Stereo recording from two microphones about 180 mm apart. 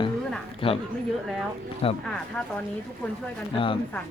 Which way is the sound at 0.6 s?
30° left (ahead or behind).